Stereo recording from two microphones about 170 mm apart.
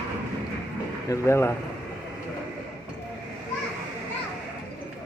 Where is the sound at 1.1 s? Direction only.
15° left (ahead or behind).